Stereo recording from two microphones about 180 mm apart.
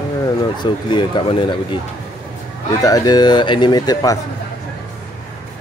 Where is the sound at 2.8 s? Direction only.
20° left (ahead or behind).